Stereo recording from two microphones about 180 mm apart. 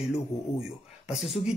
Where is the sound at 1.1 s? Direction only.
Centre (ahead or behind).